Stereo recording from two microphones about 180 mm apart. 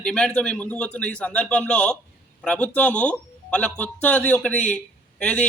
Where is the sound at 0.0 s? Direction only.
5° left (ahead or behind).